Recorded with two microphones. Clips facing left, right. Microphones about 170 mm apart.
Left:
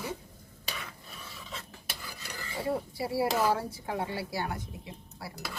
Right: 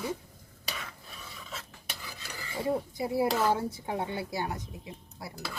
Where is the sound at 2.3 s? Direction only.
15° right (ahead or behind).